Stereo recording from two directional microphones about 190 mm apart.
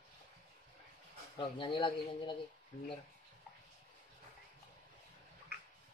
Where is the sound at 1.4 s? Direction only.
25° left (ahead or behind).